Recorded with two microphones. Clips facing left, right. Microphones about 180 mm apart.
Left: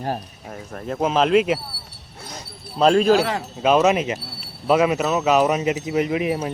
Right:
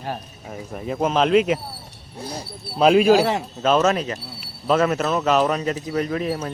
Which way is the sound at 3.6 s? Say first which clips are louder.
Left 2 dB; 10° left (ahead or behind).